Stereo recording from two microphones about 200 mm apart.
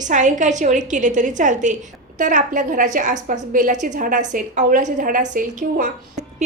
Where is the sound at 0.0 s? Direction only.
40° right (ahead or behind).